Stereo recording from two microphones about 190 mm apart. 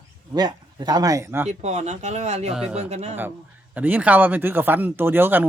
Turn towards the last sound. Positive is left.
turn(degrees=-10)  # may be behind; listen again after turning